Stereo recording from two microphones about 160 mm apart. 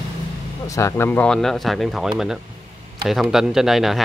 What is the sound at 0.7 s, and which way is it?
Speech, 15° left (ahead or behind).